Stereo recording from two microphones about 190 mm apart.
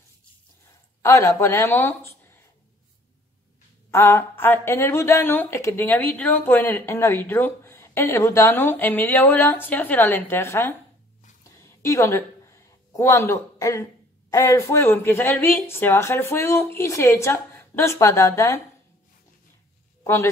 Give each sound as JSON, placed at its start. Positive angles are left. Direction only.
{"t": 1.0, "sound": "speech", "side_deg": 15}
{"t": 3.9, "sound": "a woman's voice", "side_deg": 10}
{"t": 11.4, "sound": "a sound", "side_deg": 15}
{"t": 14.3, "sound": "a woman's voice", "side_deg": 15}
{"t": 20.0, "sound": "speech", "side_deg": 15}